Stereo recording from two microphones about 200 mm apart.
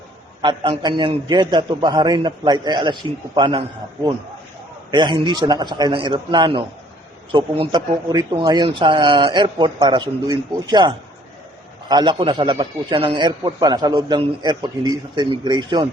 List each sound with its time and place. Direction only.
0.4 s a man's voice: 25° right (ahead or behind)
4.9 s a man's voice: 20° right (ahead or behind)